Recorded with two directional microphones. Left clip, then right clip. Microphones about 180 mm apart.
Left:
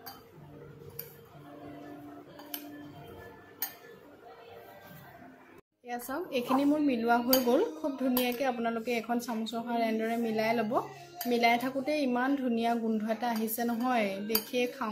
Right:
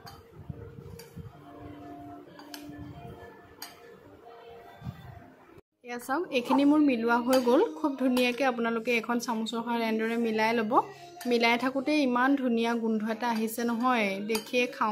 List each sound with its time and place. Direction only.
5.9 s speech: 20° right (ahead or behind)